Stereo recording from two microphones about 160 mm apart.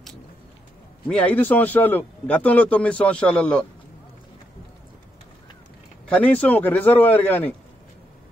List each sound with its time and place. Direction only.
1.0 s a man's voice: 10° left (ahead or behind)
6.0 s a man's voice: 10° left (ahead or behind)